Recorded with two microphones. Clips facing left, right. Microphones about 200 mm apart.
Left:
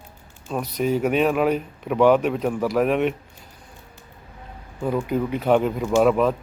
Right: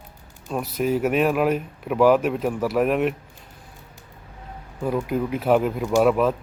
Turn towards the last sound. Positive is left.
turn(degrees=0)  # may be behind; listen again after turning